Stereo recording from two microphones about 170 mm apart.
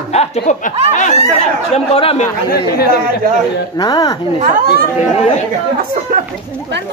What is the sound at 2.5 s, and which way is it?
Speech, 65° left (ahead or behind).